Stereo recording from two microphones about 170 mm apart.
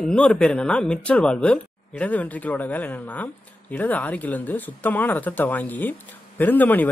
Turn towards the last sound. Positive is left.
turn(degrees=10)  # may be behind; listen again after turning